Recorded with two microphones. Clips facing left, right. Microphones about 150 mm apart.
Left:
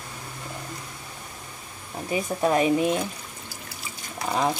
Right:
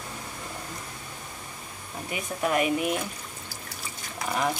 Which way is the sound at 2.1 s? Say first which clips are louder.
Left 5 dB; 30° left (ahead or behind).